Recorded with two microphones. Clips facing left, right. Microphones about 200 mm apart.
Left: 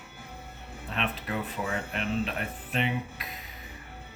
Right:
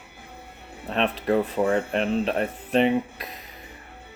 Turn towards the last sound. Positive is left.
turn(degrees=-35)  # may be behind; listen again after turning